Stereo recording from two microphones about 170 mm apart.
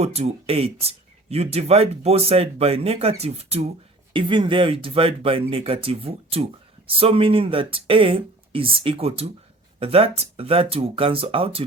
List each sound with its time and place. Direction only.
0.0 s speech: 40° right (ahead or behind)